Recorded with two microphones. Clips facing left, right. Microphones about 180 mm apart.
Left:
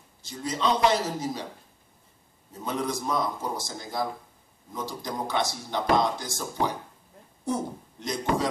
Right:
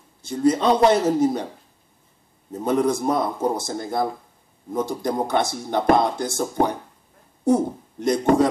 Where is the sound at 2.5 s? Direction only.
55° right (ahead or behind).